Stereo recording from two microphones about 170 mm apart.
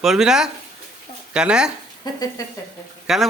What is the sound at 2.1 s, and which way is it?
Speech, 25° left (ahead or behind).